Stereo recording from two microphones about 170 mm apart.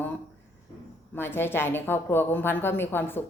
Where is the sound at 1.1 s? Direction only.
15° left (ahead or behind).